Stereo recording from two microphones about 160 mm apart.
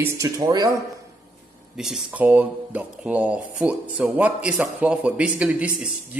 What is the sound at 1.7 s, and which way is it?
A man's voice, 5° right (ahead or behind).